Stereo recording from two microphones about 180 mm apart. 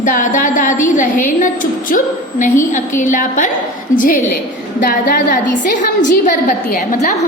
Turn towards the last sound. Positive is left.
turn(degrees=50)  # may be behind; listen again after turning